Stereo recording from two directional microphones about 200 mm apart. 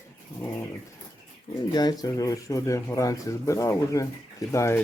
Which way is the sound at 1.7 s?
20° left (ahead or behind).